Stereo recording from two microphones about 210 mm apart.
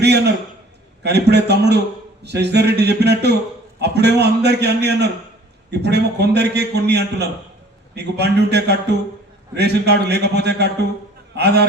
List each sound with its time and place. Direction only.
0.0 s a man's voice: 50° right (ahead or behind)